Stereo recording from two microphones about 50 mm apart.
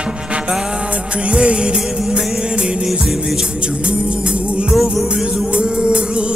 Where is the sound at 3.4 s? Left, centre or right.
Right.